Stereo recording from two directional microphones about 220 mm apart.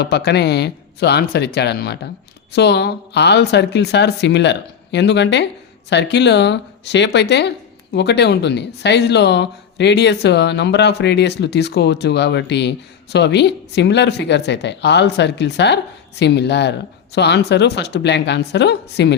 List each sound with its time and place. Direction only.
0.0 s speech: 50° left (ahead or behind)